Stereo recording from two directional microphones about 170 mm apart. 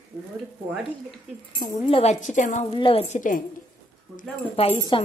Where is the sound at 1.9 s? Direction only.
35° left (ahead or behind).